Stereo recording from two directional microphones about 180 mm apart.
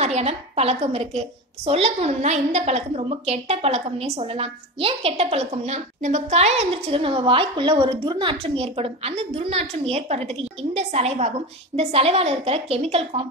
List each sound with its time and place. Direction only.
0.0 s a woman's voice: 35° right (ahead or behind)